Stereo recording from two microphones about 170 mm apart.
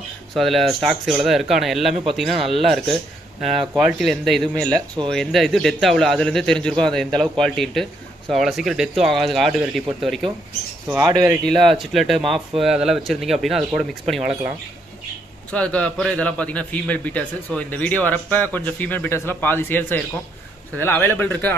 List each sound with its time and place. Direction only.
0.3 s speech: centre (ahead or behind)
11.0 s speech: 20° right (ahead or behind)
11.4 s speech: centre (ahead or behind)
15.5 s a man's voice: 5° left (ahead or behind)